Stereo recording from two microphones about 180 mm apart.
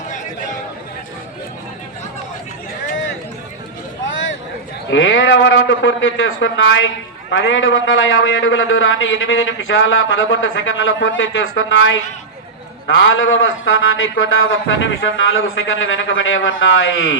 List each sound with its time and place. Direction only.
4.9 s a man's voice: 90° left